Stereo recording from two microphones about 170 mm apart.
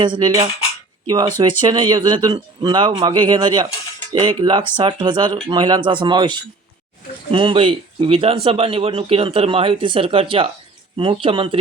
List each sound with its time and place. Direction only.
0.0 s a man's voice: 25° right (ahead or behind)